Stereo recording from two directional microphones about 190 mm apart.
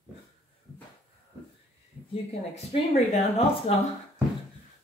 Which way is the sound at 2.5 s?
35° left (ahead or behind).